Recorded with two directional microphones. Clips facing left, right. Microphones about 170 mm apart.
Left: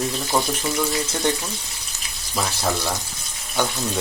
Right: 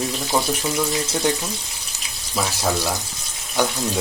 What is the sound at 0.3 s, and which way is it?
Speech, 10° right (ahead or behind).